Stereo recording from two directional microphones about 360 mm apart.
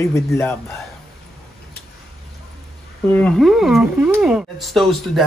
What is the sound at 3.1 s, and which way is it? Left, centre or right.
Speech, centre.